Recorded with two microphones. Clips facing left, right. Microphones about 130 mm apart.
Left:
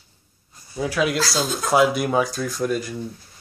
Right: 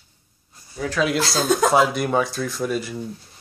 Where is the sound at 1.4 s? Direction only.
60° right (ahead or behind).